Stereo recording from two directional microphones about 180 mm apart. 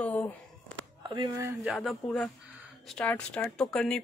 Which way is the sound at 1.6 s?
Centre (ahead or behind).